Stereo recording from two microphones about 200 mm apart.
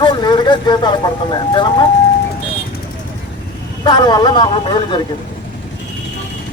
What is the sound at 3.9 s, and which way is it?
Speech, 20° left (ahead or behind).